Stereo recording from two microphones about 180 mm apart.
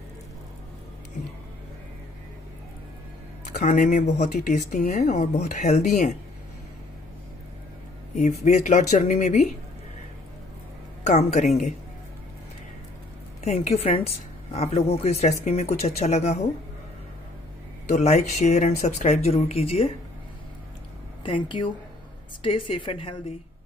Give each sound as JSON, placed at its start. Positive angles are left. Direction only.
{"t": 3.5, "sound": "speech", "side_deg": 45}
{"t": 8.1, "sound": "speech", "side_deg": 40}
{"t": 11.1, "sound": "speech", "side_deg": 40}
{"t": 13.4, "sound": "speech", "side_deg": 40}
{"t": 17.8, "sound": "speech", "side_deg": 40}
{"t": 21.2, "sound": "speech", "side_deg": 25}